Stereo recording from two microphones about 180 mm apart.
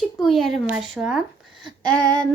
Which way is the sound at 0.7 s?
5° right (ahead or behind).